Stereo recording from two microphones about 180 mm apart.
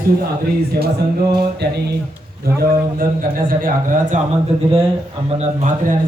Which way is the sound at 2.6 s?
50° right (ahead or behind).